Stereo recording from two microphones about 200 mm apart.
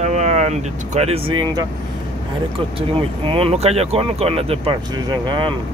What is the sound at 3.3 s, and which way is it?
Speech, 30° right (ahead or behind).